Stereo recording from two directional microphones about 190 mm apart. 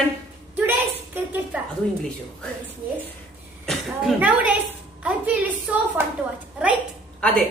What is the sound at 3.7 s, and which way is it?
Speech, 5° right (ahead or behind).